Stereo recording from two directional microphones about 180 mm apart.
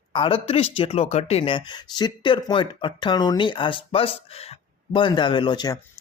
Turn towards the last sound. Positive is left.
turn(degrees=25)  # may be behind; listen again after turning